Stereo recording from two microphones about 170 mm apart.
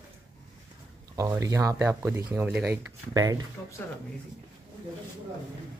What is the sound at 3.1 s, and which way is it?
Speech, 20° right (ahead or behind).